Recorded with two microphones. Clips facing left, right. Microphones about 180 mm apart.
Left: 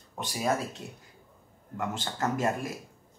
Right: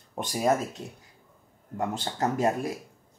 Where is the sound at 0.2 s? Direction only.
50° right (ahead or behind).